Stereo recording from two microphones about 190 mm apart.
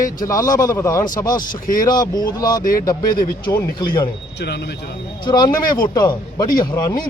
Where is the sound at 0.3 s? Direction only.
20° left (ahead or behind).